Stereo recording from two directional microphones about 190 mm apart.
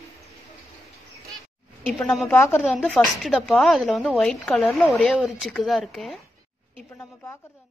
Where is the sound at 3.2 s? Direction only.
Centre (ahead or behind).